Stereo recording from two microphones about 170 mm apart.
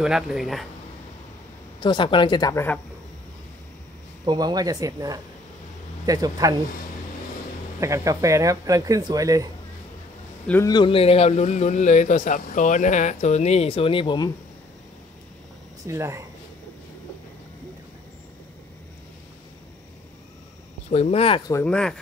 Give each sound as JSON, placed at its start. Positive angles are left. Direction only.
{"t": 0.0, "sound": "speech", "side_deg": -5}
{"t": 1.8, "sound": "speech", "side_deg": 25}
{"t": 4.3, "sound": "speech", "side_deg": -25}
{"t": 7.8, "sound": "speech", "side_deg": -15}
{"t": 10.4, "sound": "a man's voice", "side_deg": 10}
{"t": 10.7, "sound": "speech", "side_deg": 30}
{"t": 15.9, "sound": "speech", "side_deg": -15}
{"t": 20.9, "sound": "speech", "side_deg": 35}
{"t": 21.6, "sound": "speech", "side_deg": 5}